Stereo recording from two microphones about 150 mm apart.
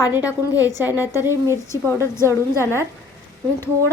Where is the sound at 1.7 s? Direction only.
20° left (ahead or behind).